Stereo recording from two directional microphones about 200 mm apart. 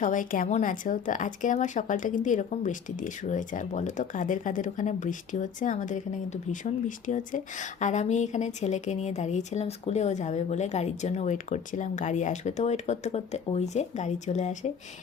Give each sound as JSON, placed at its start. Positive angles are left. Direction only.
{"t": 0.0, "sound": "speech", "side_deg": 40}